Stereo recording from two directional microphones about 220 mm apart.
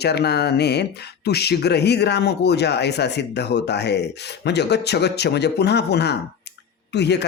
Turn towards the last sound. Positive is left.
turn(degrees=50)  # may be behind; listen again after turning